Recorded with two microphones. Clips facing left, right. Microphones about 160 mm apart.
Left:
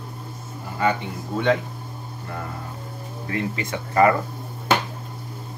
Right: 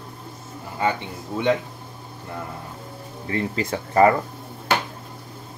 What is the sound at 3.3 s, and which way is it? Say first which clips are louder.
Speech: right 2 dB; 30° right (ahead or behind).